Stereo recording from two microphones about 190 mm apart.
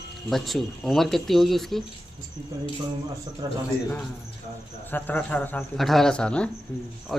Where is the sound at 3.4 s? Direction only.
20° right (ahead or behind).